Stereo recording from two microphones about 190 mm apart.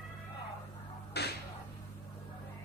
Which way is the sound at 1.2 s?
60° left (ahead or behind).